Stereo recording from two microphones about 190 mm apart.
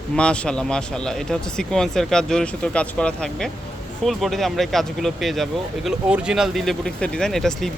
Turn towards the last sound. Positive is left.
turn(degrees=0)  # may be behind; listen again after turning